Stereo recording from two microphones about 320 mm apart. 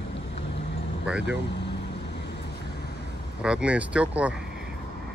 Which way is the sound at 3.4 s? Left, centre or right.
Centre.